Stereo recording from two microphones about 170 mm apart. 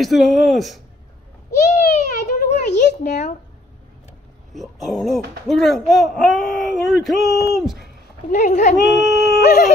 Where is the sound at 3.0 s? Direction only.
45° left (ahead or behind).